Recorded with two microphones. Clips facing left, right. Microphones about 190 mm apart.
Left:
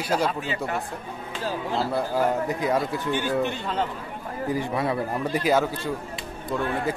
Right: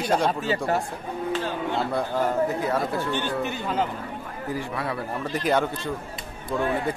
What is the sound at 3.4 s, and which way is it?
Speech, 5° right (ahead or behind).